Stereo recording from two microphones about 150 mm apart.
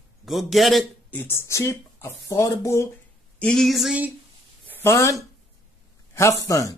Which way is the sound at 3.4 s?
5° left (ahead or behind).